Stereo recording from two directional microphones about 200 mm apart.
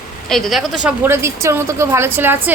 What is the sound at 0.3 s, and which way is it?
A woman's voice, centre (ahead or behind).